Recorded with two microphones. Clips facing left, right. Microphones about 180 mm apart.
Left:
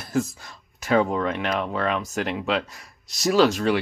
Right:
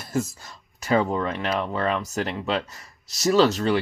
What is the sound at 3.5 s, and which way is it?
Speech, 10° left (ahead or behind).